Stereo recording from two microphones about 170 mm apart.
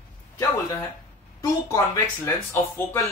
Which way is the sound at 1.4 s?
20° left (ahead or behind).